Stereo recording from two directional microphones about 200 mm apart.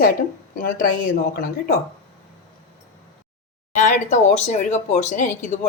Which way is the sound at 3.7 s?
40° left (ahead or behind).